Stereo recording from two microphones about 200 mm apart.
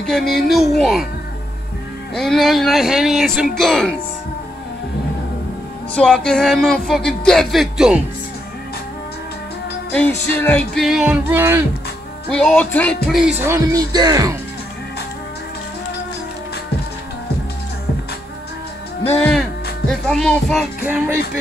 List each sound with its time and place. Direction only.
0.3 s music: centre (ahead or behind)
2.1 s music: centre (ahead or behind)
5.9 s music: 5° left (ahead or behind)
9.9 s music: 5° left (ahead or behind); by 11.6 s 10° right (ahead or behind)
12.3 s music: 5° left (ahead or behind); by 14.3 s 20° right (ahead or behind)
19.0 s speech: 5° left (ahead or behind)
19.9 s music: centre (ahead or behind)
20.8 s music: 10° right (ahead or behind)